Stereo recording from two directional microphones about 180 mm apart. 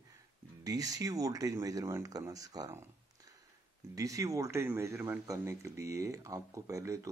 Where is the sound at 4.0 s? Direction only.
20° right (ahead or behind).